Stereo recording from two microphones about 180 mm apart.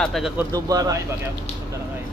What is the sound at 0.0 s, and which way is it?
Speech, centre (ahead or behind).